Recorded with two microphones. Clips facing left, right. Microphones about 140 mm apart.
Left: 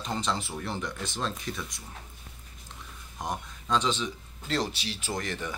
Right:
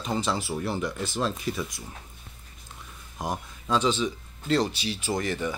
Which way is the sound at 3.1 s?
5° right (ahead or behind).